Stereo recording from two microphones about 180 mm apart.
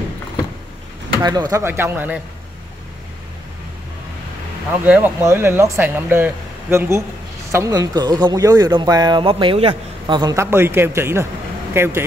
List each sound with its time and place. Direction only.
1.2 s speech: 20° right (ahead or behind)
4.8 s speech: 10° right (ahead or behind)